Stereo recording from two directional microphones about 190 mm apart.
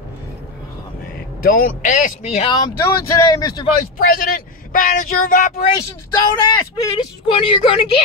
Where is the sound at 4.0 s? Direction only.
50° left (ahead or behind).